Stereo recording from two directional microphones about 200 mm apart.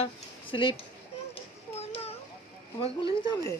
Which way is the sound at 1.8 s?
30° left (ahead or behind).